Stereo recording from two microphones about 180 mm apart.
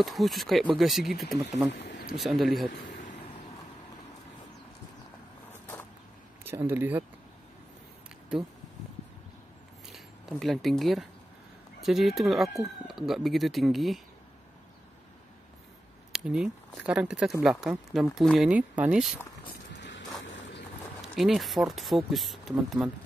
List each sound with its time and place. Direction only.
0.0 s speech: centre (ahead or behind)
1.7 s speech: 75° left (ahead or behind)
2.1 s speech: centre (ahead or behind)
6.4 s speech: 10° right (ahead or behind)
9.9 s speech: centre (ahead or behind)
16.1 s speech: 5° right (ahead or behind)
19.8 s vehicle: 90° left
21.2 s speech: centre (ahead or behind)